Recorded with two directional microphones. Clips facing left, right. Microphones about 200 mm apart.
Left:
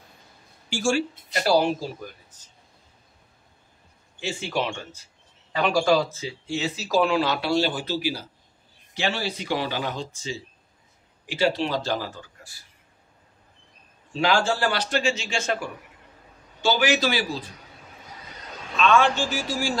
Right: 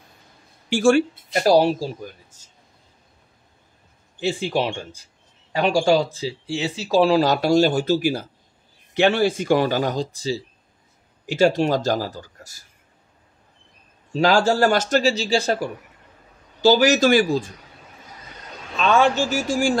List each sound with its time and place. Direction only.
0.7 s speech: 60° right (ahead or behind)
1.4 s speech: 35° right (ahead or behind)
4.2 s speech: 35° right (ahead or behind)
14.1 s speech: 40° right (ahead or behind)
18.8 s speech: 40° right (ahead or behind)